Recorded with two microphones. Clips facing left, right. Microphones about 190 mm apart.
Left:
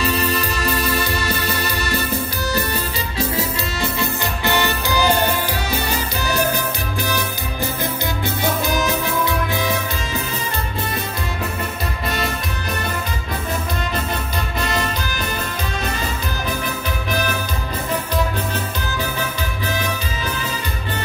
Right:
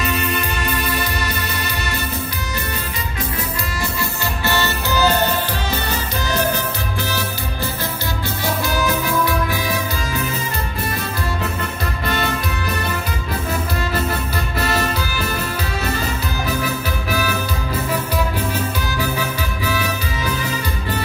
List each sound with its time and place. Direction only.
0.0 s music: 35° left (ahead or behind)
3.2 s music: 25° left (ahead or behind)
19.1 s music: 10° right (ahead or behind)